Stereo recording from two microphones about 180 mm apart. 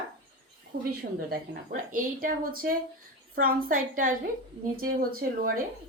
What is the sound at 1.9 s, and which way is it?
Speech, 50° right (ahead or behind).